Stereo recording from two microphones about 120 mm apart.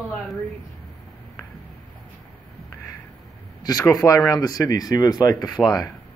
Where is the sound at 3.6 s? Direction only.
30° left (ahead or behind).